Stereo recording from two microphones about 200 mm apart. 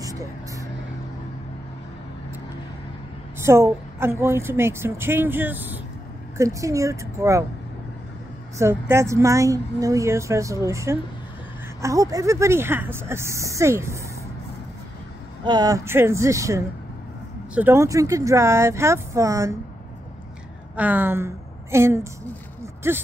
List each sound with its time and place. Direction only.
0.0 s vehicle: 15° right (ahead or behind)
3.3 s a woman's voice: 15° right (ahead or behind)
8.5 s a woman's voice: 15° right (ahead or behind)
15.4 s a woman's voice: 20° right (ahead or behind)
20.7 s a woman's voice: 10° right (ahead or behind)